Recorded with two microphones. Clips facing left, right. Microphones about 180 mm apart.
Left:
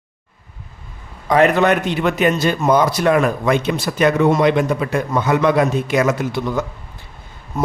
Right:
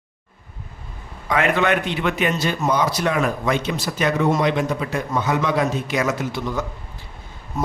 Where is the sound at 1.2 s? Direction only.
40° left (ahead or behind).